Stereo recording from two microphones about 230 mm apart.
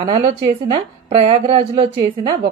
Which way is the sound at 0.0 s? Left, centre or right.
Right.